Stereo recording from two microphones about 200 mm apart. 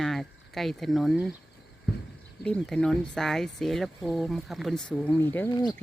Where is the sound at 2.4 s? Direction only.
5° left (ahead or behind).